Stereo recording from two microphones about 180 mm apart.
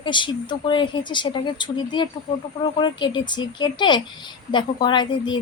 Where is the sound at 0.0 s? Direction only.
25° left (ahead or behind).